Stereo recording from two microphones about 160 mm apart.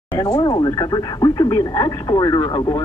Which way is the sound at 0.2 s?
25° left (ahead or behind).